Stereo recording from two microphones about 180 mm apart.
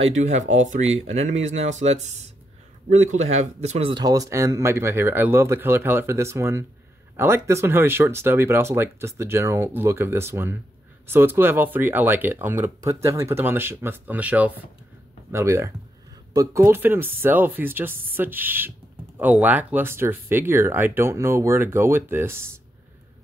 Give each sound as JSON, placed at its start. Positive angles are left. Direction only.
{"t": 0.0, "sound": "speech", "side_deg": -40}
{"t": 3.9, "sound": "speech", "side_deg": -20}